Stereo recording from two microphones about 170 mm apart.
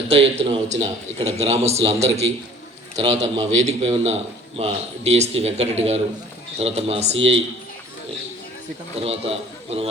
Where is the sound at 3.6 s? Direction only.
35° right (ahead or behind).